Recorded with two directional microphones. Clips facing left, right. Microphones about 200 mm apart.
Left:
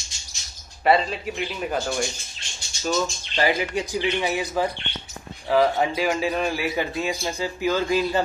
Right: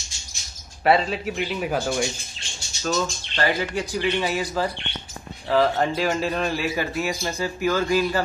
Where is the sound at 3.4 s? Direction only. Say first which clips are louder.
Left 1 dB; 15° left (ahead or behind).